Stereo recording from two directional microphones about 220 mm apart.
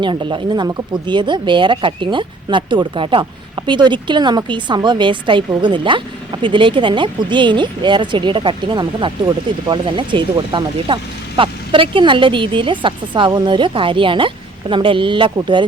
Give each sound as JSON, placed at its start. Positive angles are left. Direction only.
{"t": 0.0, "sound": "speech", "side_deg": -20}